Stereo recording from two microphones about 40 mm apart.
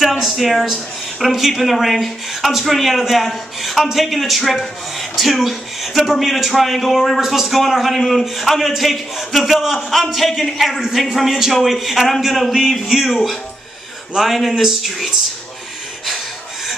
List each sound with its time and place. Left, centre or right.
0.0 s a man's voice: centre